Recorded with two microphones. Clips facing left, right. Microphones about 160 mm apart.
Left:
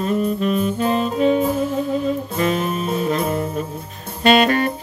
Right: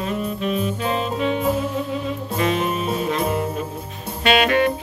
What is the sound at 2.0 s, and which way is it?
Music, 40° left (ahead or behind).